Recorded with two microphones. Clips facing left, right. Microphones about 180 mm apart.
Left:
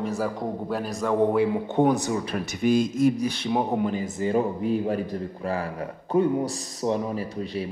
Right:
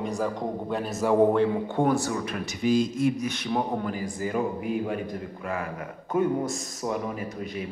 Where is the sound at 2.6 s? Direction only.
55° left (ahead or behind).